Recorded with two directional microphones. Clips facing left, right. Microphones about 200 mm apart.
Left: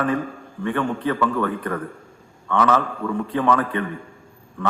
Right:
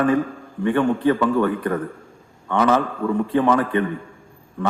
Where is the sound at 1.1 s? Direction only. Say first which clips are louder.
Right 4 dB; 25° right (ahead or behind).